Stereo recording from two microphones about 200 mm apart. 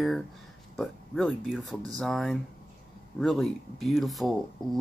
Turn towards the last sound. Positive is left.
turn(degrees=-20)  # may be behind; listen again after turning